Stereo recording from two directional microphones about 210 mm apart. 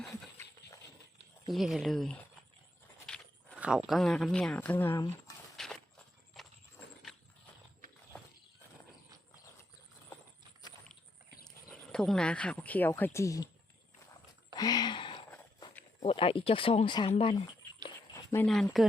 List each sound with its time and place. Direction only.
1.5 s speech: centre (ahead or behind)
5.6 s walk: centre (ahead or behind)
6.4 s horse: centre (ahead or behind)
11.4 s speech: 5° left (ahead or behind)
14.5 s a sound: 20° left (ahead or behind)
15.3 s walk: 15° left (ahead or behind)
16.0 s speech: 25° left (ahead or behind)
17.8 s a sound: 15° left (ahead or behind)
18.4 s speech: centre (ahead or behind)